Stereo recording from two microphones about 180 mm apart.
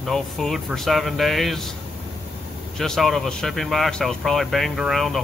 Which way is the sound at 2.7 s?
Centre (ahead or behind).